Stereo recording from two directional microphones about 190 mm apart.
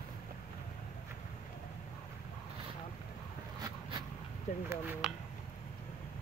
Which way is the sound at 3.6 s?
20° right (ahead or behind).